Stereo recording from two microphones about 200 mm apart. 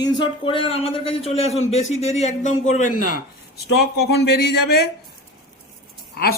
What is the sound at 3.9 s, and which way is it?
Speech, 55° left (ahead or behind).